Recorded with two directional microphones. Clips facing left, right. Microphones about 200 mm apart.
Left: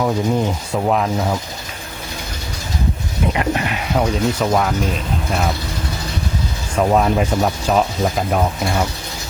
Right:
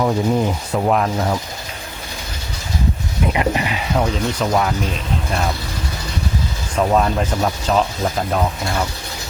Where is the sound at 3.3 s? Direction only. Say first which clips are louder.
Right 2 dB; 5° right (ahead or behind).